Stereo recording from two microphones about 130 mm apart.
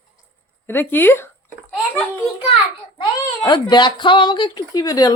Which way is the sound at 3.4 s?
35° left (ahead or behind).